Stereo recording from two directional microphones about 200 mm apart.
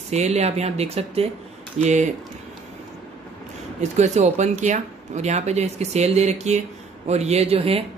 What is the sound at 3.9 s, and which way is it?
Speech, 35° right (ahead or behind).